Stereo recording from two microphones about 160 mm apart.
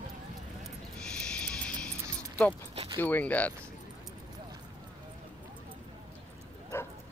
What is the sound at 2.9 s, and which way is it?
Speech, 10° left (ahead or behind).